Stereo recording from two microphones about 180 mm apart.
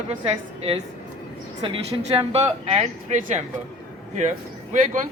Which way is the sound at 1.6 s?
30° right (ahead or behind).